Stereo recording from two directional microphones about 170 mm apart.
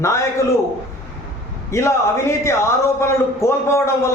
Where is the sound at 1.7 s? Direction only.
15° left (ahead or behind).